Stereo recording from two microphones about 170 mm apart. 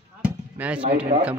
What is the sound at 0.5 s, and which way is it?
Speech, 10° right (ahead or behind).